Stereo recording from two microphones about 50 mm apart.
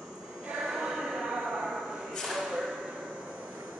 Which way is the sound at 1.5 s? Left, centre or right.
Centre.